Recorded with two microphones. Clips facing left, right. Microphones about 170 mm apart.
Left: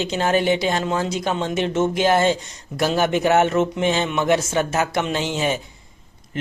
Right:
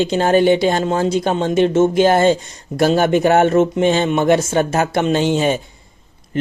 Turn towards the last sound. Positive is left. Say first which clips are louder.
# right 7 dB
turn(degrees=-30)  # may be behind; listen again after turning